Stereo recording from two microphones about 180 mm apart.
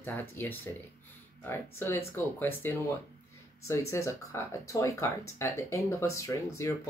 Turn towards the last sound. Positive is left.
turn(degrees=15)  # may be behind; listen again after turning